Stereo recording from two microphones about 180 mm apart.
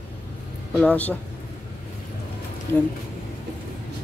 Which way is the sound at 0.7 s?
10° left (ahead or behind).